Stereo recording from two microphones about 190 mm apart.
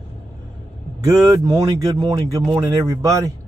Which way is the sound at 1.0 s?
20° right (ahead or behind).